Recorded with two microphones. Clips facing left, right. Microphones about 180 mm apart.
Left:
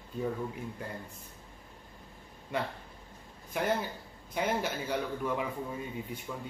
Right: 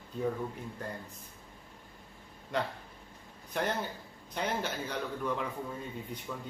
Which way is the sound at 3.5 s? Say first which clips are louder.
Left 2 dB; 10° left (ahead or behind).